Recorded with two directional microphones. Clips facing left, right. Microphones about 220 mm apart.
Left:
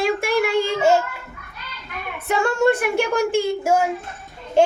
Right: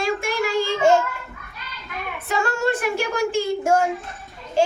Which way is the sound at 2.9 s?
55° left (ahead or behind).